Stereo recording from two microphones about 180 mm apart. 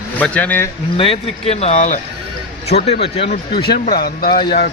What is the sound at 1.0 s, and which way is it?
A man's voice, 35° left (ahead or behind).